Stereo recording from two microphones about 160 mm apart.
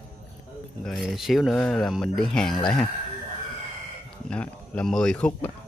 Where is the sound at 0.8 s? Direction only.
Centre (ahead or behind).